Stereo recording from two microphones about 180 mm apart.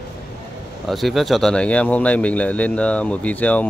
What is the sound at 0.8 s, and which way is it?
Speech, centre (ahead or behind).